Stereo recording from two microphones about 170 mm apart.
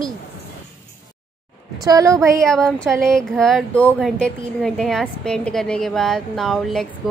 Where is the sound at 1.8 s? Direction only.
20° right (ahead or behind).